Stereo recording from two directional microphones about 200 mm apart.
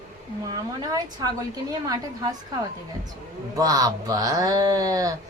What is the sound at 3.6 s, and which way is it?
A woman's voice, 20° right (ahead or behind).